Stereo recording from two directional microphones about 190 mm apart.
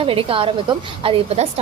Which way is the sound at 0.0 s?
30° right (ahead or behind).